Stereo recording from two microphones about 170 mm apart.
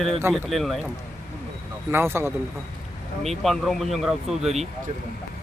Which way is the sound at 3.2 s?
Centre (ahead or behind).